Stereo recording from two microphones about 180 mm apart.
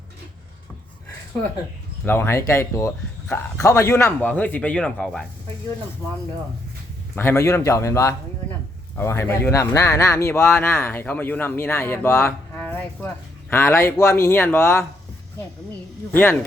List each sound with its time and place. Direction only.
2.0 s speech: 15° left (ahead or behind)
7.2 s speech: 15° left (ahead or behind)